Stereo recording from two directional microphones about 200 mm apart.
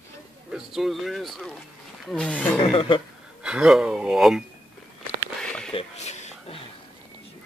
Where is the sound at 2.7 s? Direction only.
30° left (ahead or behind).